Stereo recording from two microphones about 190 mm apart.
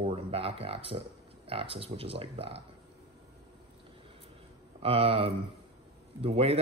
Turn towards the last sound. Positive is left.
turn(degrees=-30)  # may be behind; listen again after turning